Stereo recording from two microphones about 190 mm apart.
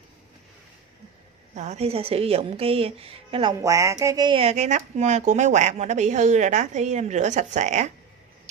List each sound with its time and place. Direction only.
1.5 s speech: 35° right (ahead or behind)
3.6 s speech: 15° right (ahead or behind); by 7.9 s 40° right (ahead or behind)